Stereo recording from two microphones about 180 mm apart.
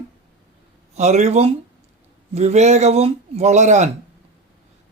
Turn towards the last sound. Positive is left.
turn(degrees=-40)  # may be behind; listen again after turning